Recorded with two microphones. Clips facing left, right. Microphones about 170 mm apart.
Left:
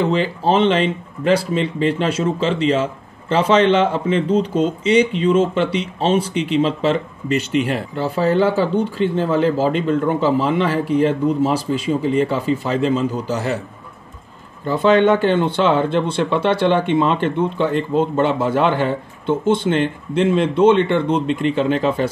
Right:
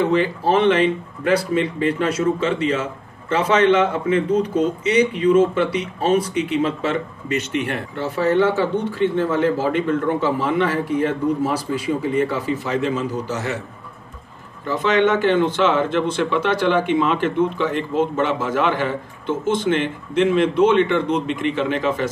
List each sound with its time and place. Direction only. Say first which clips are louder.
0.4 s a man's voice: left 1 dB; 25° left (ahead or behind)
14.7 s speech: left 4 dB; 30° left (ahead or behind)